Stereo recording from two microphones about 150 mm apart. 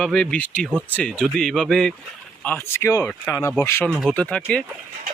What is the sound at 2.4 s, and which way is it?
Speech, 10° left (ahead or behind).